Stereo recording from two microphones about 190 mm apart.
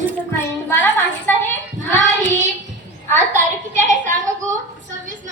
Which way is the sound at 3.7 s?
40° right (ahead or behind).